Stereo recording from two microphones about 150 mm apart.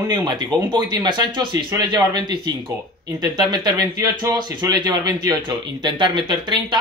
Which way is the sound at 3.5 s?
25° right (ahead or behind).